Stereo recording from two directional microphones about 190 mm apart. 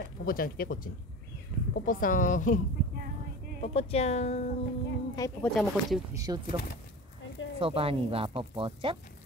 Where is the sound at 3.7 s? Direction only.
30° left (ahead or behind).